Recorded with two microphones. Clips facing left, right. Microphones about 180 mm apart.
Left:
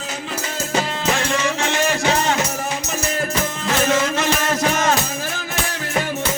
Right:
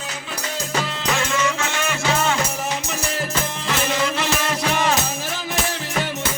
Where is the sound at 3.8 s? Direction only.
45° left (ahead or behind).